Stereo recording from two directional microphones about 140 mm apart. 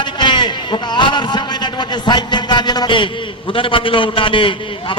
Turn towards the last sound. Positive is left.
turn(degrees=35)  # may be behind; listen again after turning